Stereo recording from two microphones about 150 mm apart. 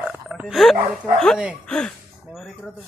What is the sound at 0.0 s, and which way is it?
Dog, 10° right (ahead or behind).